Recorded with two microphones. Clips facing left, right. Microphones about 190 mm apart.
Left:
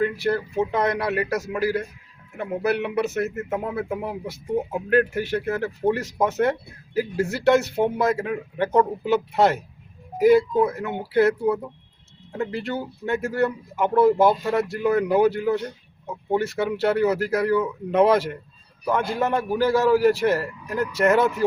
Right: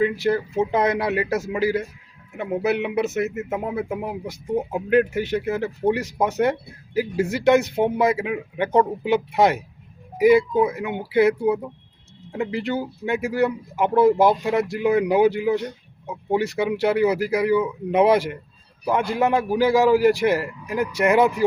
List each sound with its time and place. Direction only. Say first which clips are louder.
0.0 s speech: right 2 dB; 20° right (ahead or behind)